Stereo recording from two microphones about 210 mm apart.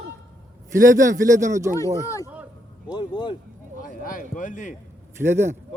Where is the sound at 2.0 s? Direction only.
15° left (ahead or behind).